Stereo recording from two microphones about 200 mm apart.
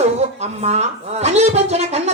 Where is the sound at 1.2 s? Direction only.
35° right (ahead or behind).